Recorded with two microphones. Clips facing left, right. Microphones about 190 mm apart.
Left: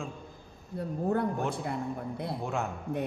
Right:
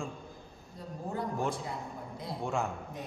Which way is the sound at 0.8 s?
60° left (ahead or behind).